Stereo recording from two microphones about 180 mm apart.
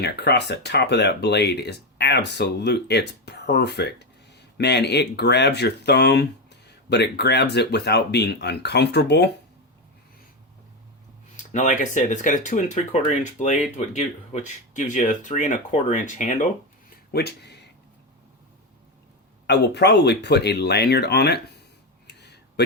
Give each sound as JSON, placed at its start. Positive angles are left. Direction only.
{"t": 0.0, "sound": "speech", "side_deg": 65}
{"t": 11.5, "sound": "speech", "side_deg": 40}
{"t": 17.1, "sound": "speech", "side_deg": 65}
{"t": 19.5, "sound": "speech", "side_deg": 65}
{"t": 22.0, "sound": "a sound", "side_deg": 70}